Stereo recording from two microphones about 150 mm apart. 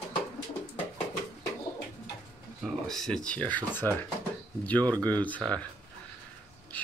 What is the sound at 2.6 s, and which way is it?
Speech, centre (ahead or behind).